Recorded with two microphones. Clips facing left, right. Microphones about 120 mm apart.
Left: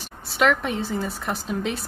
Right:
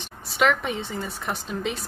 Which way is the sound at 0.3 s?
Centre (ahead or behind).